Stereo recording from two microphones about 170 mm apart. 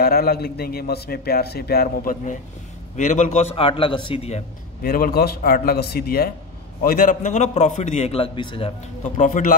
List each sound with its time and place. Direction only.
0.0 s a man's voice: 60° left (ahead or behind)
3.0 s a man's voice: 45° left (ahead or behind)
4.8 s a man's voice: 60° left (ahead or behind); by 8.7 s 30° left (ahead or behind)
9.1 s a man's voice: 50° left (ahead or behind)